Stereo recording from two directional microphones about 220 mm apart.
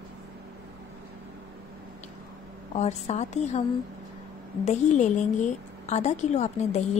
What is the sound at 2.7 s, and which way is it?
Speech, 30° left (ahead or behind).